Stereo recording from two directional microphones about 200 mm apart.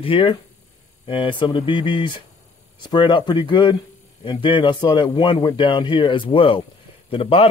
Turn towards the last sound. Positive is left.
turn(degrees=30)  # may be behind; listen again after turning